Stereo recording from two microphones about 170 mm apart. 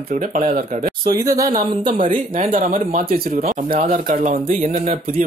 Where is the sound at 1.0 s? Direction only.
20° right (ahead or behind).